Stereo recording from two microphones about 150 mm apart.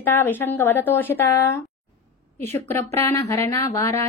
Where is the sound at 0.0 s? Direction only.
15° left (ahead or behind).